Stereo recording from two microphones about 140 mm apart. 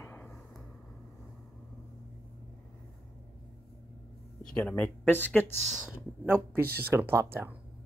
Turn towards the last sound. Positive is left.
turn(degrees=-15)  # may be behind; listen again after turning